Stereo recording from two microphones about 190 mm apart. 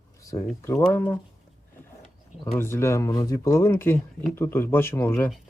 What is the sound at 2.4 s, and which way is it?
Speech, 15° left (ahead or behind).